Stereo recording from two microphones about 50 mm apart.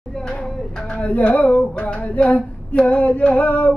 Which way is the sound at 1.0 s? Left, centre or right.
Left.